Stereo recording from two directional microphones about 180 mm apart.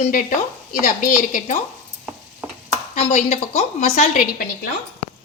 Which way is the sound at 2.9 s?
40° left (ahead or behind).